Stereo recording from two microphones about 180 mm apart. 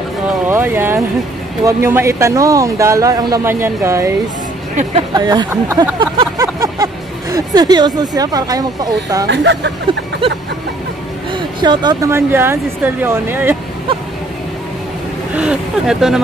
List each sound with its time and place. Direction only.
0.5 s speech: 10° right (ahead or behind)
5.1 s speech: 25° right (ahead or behind)
9.3 s speech: 75° right (ahead or behind)
10.2 s vehicle: 30° right (ahead or behind)
11.3 s speech: 25° right (ahead or behind)
15.3 s speech: 5° right (ahead or behind)